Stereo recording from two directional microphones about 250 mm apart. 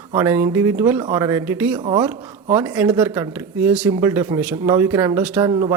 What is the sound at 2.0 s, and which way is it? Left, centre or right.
Speech, centre.